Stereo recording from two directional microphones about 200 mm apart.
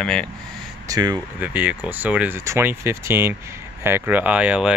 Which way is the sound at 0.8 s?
20° right (ahead or behind).